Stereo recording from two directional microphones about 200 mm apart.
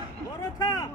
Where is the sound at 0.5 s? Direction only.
20° left (ahead or behind).